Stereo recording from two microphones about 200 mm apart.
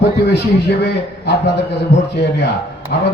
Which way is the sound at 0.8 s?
55° left (ahead or behind).